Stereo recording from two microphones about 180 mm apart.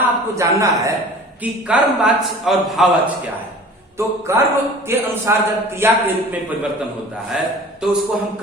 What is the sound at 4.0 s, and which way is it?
A man's voice, 15° right (ahead or behind).